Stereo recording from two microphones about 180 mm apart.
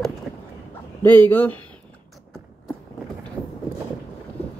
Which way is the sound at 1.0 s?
10° left (ahead or behind).